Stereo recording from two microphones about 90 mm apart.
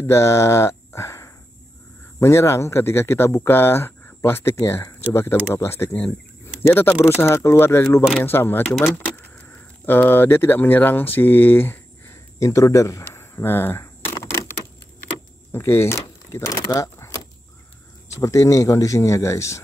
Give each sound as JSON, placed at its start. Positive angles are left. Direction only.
{"t": 0.0, "sound": "speech", "side_deg": 30}
{"t": 12.4, "sound": "speech", "side_deg": 35}
{"t": 13.0, "sound": "a sound", "side_deg": 25}
{"t": 15.5, "sound": "speech", "side_deg": 30}
{"t": 16.5, "sound": "speech", "side_deg": 50}
{"t": 17.0, "sound": "vehicle", "side_deg": 40}
{"t": 18.2, "sound": "speech", "side_deg": 35}